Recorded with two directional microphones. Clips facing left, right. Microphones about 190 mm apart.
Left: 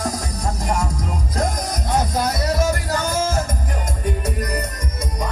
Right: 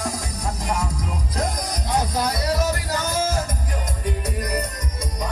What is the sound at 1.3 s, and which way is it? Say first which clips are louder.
Music: left 3 dB; 45° left (ahead or behind).